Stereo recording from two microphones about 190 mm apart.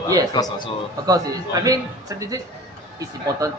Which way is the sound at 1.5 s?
20° right (ahead or behind).